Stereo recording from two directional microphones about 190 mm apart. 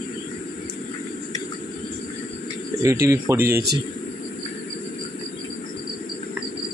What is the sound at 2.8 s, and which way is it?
Speech, 15° right (ahead or behind).